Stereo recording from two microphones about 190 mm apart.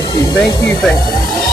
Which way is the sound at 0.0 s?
20° left (ahead or behind).